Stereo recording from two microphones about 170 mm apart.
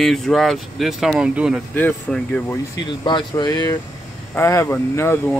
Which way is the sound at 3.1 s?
25° left (ahead or behind).